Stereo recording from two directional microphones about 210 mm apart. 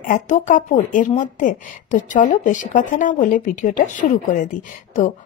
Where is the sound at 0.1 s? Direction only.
35° left (ahead or behind).